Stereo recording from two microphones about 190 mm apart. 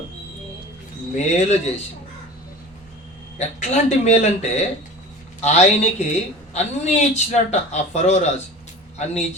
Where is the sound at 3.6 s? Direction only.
35° left (ahead or behind).